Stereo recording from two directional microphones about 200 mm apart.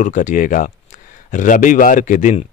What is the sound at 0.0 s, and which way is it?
A man's voice, 40° left (ahead or behind).